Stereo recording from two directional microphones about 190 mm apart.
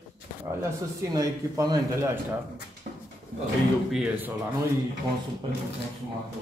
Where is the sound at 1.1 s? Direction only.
20° right (ahead or behind).